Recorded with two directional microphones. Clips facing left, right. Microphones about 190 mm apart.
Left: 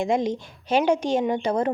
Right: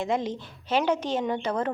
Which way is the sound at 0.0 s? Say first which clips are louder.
Left 4 dB; 15° left (ahead or behind).